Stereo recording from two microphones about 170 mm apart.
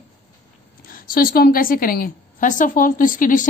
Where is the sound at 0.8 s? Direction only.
60° left (ahead or behind).